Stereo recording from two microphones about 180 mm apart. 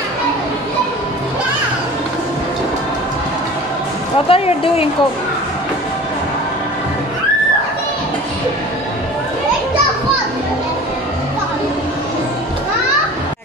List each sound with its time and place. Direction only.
4.3 s speech: 35° left (ahead or behind)